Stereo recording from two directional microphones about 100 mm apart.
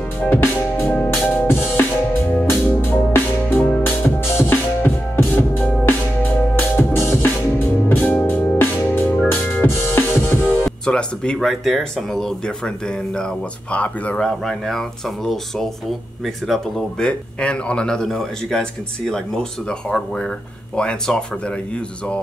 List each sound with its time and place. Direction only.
0.3 s music: 25° left (ahead or behind); by 13.2 s 5° left (ahead or behind)
13.7 s speech: 15° left (ahead or behind)
16.4 s speech: 5° left (ahead or behind)
20.7 s speech: 10° left (ahead or behind)